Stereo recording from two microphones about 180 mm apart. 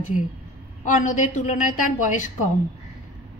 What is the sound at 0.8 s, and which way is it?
A woman's voice, 45° left (ahead or behind).